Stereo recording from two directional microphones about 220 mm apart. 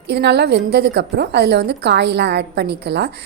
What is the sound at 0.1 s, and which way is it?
A woman's voice, 50° right (ahead or behind).